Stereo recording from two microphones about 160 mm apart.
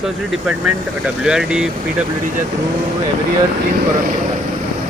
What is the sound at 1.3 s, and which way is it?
Speech, 5° right (ahead or behind).